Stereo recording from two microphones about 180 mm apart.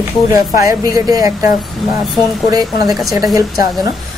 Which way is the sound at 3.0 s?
20° right (ahead or behind).